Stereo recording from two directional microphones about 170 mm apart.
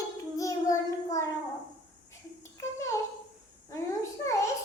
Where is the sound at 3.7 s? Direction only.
15° left (ahead or behind).